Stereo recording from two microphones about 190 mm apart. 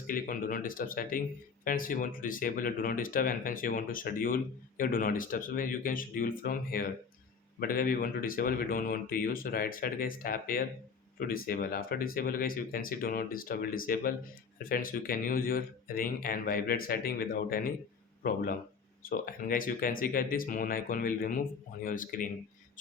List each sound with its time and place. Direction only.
0.1 s speech: 45° left (ahead or behind)